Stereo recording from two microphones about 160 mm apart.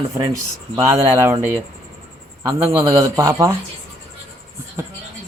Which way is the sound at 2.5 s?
15° right (ahead or behind).